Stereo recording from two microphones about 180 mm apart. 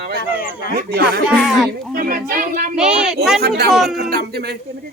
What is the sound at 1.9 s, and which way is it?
Speech, 55° right (ahead or behind).